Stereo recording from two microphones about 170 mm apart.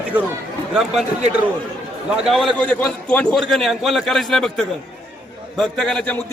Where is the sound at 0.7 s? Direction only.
Centre (ahead or behind).